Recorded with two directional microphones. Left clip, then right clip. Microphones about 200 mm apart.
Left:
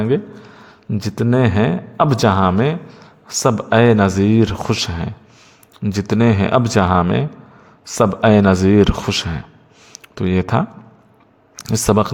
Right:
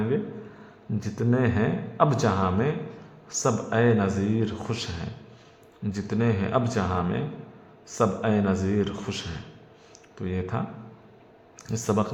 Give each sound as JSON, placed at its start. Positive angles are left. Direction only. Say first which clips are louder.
{"t": 0.9, "sound": "speech", "louder": "left 9 dB", "side_deg": 35}
{"t": 9.9, "sound": "a sound", "louder": "left 13 dB", "side_deg": 45}
{"t": 11.5, "sound": "speech", "louder": "left 11 dB", "side_deg": 40}